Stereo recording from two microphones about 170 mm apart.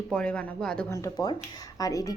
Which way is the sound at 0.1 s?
5° left (ahead or behind).